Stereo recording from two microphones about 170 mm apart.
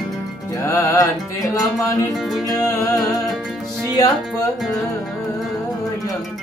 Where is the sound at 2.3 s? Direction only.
Centre (ahead or behind).